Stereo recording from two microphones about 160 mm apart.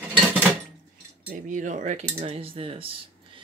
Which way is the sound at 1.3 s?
50° right (ahead or behind).